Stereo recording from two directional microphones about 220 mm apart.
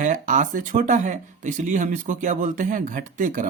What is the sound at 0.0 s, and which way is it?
Speech, 35° right (ahead or behind).